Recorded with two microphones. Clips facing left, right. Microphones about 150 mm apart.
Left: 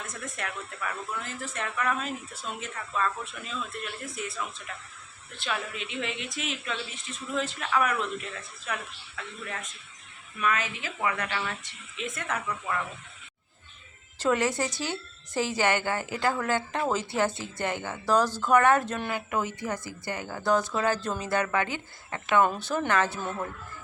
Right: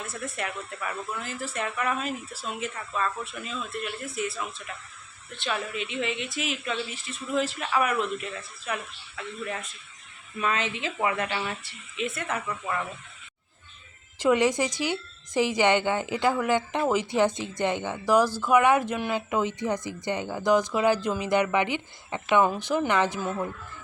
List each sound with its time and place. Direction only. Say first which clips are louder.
0.0 s speech: right 3 dB; 5° right (ahead or behind)
10.3 s a woman's voice: right 1 dB; 25° right (ahead or behind)
11.9 s speech: right 3 dB; 5° right (ahead or behind)
14.2 s speech: right 4 dB; 15° right (ahead or behind)